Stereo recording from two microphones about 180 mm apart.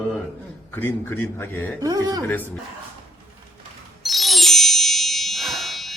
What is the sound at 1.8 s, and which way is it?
Speech, 20° right (ahead or behind).